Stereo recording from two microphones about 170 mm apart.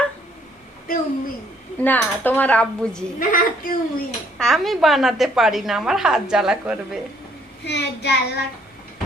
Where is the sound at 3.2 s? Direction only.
50° left (ahead or behind).